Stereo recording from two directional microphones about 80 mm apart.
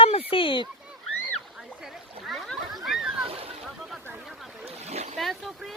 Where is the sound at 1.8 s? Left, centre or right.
Centre.